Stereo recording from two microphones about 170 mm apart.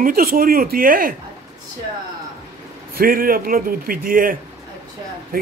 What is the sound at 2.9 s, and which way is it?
A man's voice, 55° right (ahead or behind).